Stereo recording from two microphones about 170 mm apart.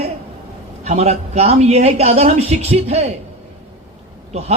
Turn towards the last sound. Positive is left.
turn(degrees=-40)  # may be behind; listen again after turning